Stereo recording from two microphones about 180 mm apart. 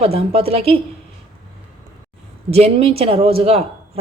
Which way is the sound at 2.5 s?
35° right (ahead or behind).